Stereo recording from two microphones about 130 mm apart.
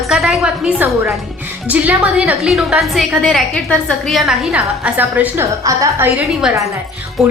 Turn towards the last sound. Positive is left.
turn(degrees=0)  # may be behind; listen again after turning